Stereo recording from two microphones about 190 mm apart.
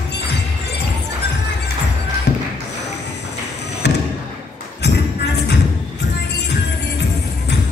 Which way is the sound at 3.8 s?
65° left (ahead or behind).